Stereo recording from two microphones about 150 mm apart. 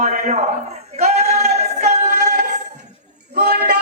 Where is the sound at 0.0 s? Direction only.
50° right (ahead or behind).